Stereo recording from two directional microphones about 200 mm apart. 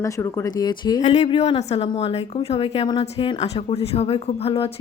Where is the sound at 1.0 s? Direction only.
35° left (ahead or behind).